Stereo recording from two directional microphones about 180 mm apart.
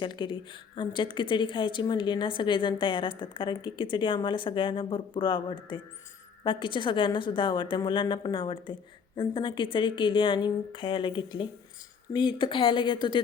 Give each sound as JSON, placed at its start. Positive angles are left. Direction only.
{"t": 0.0, "sound": "a woman's voice", "side_deg": 25}